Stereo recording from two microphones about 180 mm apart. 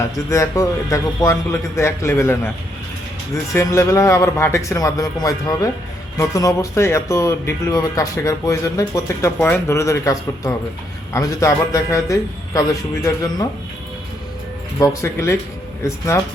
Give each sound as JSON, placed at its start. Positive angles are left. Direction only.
{"t": 0.3, "sound": "speech", "side_deg": 15}
{"t": 3.5, "sound": "a man's voice", "side_deg": 15}
{"t": 14.8, "sound": "speech", "side_deg": 15}